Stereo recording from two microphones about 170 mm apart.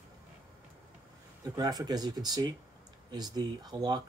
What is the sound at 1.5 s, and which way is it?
Speech, 20° right (ahead or behind).